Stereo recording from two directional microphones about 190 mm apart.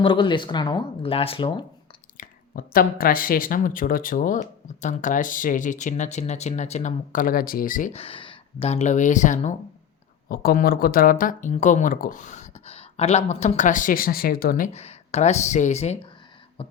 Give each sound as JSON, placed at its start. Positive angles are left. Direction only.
{"t": 0.0, "sound": "speech", "side_deg": 25}
{"t": 2.1, "sound": "speech", "side_deg": 45}
{"t": 7.9, "sound": "speech", "side_deg": 30}
{"t": 10.2, "sound": "speech", "side_deg": 50}
{"t": 14.7, "sound": "speech", "side_deg": 35}
{"t": 16.6, "sound": "music", "side_deg": 30}